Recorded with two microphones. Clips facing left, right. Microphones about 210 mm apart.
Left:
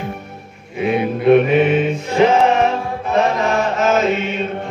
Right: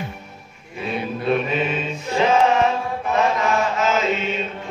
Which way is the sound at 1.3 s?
65° left (ahead or behind).